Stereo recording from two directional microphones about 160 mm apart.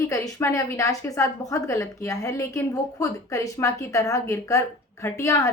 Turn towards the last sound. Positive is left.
turn(degrees=20)  # may be behind; listen again after turning